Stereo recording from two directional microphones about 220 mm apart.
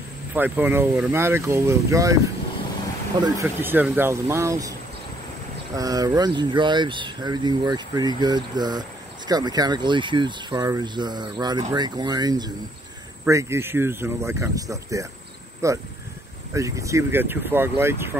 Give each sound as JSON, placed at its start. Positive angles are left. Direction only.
{"t": 0.3, "sound": "speech", "side_deg": -10}
{"t": 3.2, "sound": "speech", "side_deg": -15}
{"t": 5.8, "sound": "speech", "side_deg": -15}